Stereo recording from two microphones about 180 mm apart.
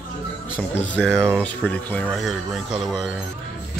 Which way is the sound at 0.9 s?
5° left (ahead or behind).